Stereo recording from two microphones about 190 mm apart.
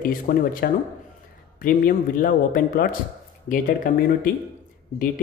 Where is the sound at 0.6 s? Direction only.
55° left (ahead or behind).